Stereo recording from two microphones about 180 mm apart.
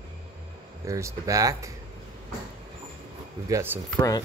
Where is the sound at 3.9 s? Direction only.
20° left (ahead or behind).